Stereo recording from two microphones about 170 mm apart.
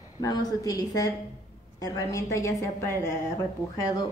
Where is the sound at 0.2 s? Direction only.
20° left (ahead or behind).